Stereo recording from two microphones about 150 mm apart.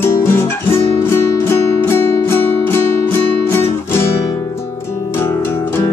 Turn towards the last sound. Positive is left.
turn(degrees=15)  # may be behind; listen again after turning